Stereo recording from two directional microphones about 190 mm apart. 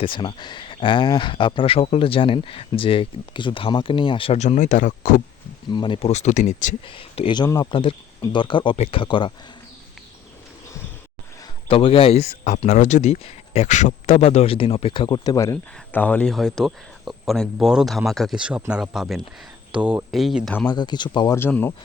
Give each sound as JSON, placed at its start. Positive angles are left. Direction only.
{"t": 0.0, "sound": "speech", "side_deg": 25}
{"t": 5.7, "sound": "speech", "side_deg": 25}
{"t": 6.8, "sound": "speech", "side_deg": 25}
{"t": 11.7, "sound": "speech", "side_deg": 30}
{"t": 12.5, "sound": "speech", "side_deg": 40}
{"t": 20.7, "sound": "speech", "side_deg": 20}
{"t": 21.3, "sound": "speech", "side_deg": 10}